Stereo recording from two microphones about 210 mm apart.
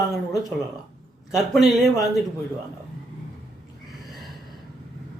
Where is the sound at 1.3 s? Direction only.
Centre (ahead or behind).